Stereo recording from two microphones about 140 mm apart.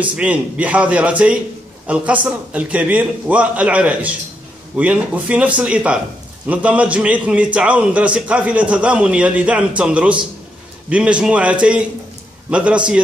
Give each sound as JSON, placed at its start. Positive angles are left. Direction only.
{"t": 0.0, "sound": "a man's voice", "side_deg": -10}